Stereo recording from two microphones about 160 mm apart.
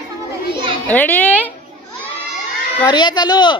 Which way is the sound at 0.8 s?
10° left (ahead or behind).